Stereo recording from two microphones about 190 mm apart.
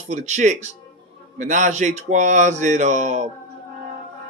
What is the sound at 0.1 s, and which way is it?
Speech, 40° right (ahead or behind).